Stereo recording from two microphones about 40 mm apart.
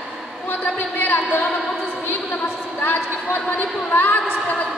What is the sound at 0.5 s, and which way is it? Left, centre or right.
A woman's voice, left.